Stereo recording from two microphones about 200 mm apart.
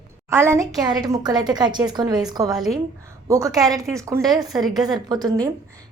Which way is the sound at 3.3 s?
15° right (ahead or behind).